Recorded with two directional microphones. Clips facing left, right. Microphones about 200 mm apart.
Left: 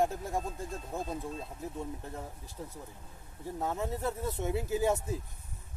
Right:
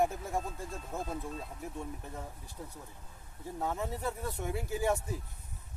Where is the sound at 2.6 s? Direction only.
Centre (ahead or behind); by 5.2 s 20° left (ahead or behind).